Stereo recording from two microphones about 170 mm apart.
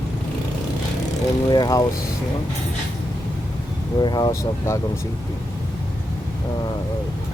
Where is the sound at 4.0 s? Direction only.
25° left (ahead or behind).